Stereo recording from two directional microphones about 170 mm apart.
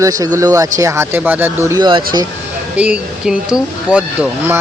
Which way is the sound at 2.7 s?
5° right (ahead or behind).